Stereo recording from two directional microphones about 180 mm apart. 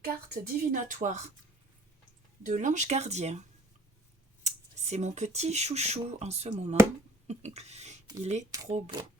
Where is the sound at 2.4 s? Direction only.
45° right (ahead or behind).